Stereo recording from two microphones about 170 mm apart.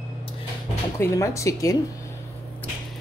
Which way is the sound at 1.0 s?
15° left (ahead or behind).